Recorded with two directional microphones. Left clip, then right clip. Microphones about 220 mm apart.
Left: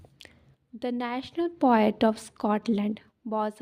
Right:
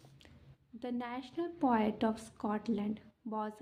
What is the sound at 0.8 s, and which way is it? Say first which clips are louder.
A woman's voice: left 9 dB; 40° left (ahead or behind).